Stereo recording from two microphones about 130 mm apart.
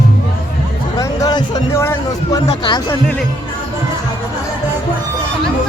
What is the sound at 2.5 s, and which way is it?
Speech, 35° left (ahead or behind).